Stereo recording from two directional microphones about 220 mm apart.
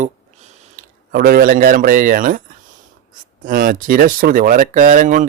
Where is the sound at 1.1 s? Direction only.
40° right (ahead or behind).